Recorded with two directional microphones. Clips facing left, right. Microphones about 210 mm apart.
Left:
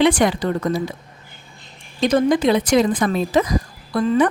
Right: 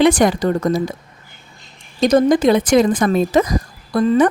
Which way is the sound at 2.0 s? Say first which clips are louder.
Right 3 dB; 40° right (ahead or behind).